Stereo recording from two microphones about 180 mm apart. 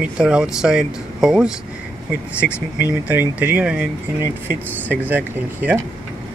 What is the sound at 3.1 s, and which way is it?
Speech, 10° right (ahead or behind).